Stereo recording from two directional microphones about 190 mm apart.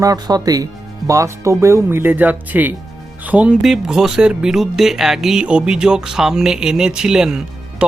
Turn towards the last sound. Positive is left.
turn(degrees=-5)  # may be behind; listen again after turning